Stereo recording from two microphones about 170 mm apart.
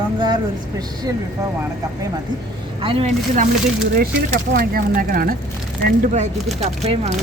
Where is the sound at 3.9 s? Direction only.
65° right (ahead or behind).